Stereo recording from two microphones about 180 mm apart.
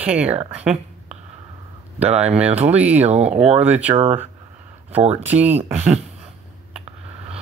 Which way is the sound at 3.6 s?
10° right (ahead or behind).